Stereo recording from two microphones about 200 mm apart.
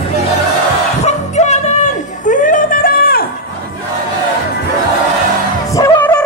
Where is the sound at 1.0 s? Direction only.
35° left (ahead or behind).